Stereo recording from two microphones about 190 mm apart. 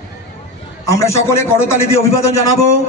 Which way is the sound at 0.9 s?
15° left (ahead or behind).